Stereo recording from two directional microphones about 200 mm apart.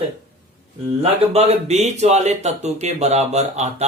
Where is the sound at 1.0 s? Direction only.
30° right (ahead or behind).